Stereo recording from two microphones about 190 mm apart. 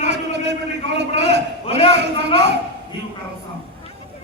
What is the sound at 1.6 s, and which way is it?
Speech, 30° left (ahead or behind).